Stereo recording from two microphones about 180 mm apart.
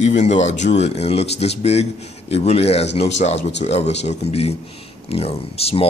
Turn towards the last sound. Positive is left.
turn(degrees=35)  # may be behind; listen again after turning